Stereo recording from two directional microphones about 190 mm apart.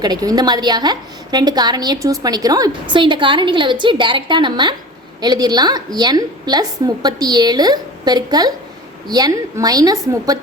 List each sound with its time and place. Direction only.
0.0 s a woman's voice: 20° right (ahead or behind)